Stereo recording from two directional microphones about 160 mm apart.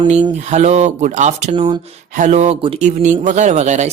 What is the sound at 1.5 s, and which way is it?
Speech, 30° right (ahead or behind).